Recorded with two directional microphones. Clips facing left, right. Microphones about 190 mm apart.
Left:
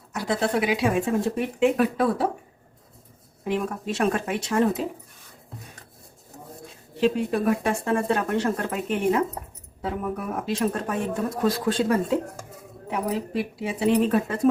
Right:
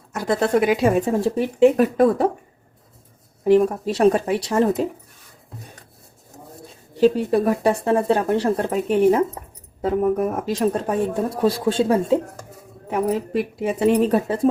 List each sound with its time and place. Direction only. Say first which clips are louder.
0.1 s a woman's voice: right 5 dB; 50° right (ahead or behind)
3.4 s speech: right 11 dB; 40° right (ahead or behind)
7.3 s speech: right 5 dB; 35° right (ahead or behind)
12.9 s speech: right 5 dB; 50° right (ahead or behind)
14.0 s speech: right 4 dB; 35° right (ahead or behind)